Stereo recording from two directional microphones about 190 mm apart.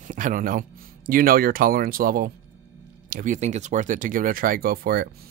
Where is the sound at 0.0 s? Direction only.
45° right (ahead or behind).